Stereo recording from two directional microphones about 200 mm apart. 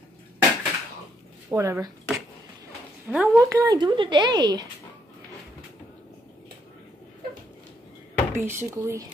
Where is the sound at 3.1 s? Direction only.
5° right (ahead or behind); by 4.7 s 20° right (ahead or behind).